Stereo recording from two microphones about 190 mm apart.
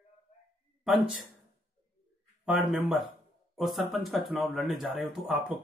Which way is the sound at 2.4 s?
5° right (ahead or behind).